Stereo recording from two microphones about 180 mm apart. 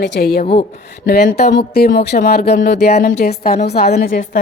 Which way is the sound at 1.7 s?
60° left (ahead or behind).